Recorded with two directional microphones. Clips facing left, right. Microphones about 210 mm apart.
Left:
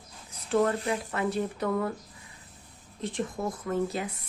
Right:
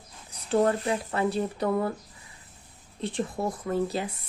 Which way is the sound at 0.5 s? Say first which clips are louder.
Right 2 dB; 35° right (ahead or behind).